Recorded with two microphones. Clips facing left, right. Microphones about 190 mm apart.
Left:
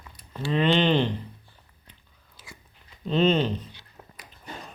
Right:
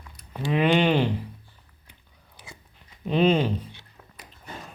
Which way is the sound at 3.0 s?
10° right (ahead or behind).